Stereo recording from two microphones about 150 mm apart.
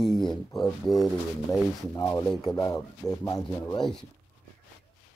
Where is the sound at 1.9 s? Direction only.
25° left (ahead or behind).